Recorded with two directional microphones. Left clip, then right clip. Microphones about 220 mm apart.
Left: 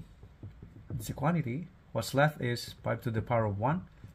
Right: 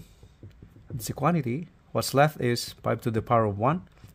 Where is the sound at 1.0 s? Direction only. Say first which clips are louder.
Right 7 dB; 60° right (ahead or behind).